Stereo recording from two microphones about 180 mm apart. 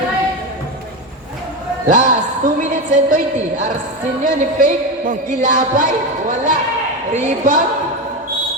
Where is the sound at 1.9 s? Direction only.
45° right (ahead or behind).